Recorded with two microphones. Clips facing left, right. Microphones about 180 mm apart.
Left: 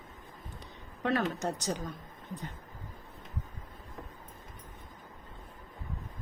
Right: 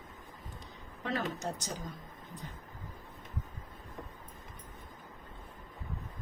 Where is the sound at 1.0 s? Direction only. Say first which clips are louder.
Left 5 dB; 65° left (ahead or behind).